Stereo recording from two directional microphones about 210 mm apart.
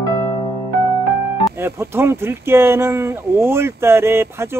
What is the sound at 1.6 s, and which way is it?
Speech, 10° right (ahead or behind).